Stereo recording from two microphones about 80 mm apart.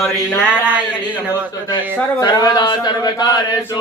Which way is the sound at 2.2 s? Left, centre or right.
Left.